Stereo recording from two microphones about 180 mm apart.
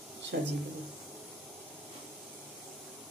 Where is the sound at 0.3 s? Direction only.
60° right (ahead or behind).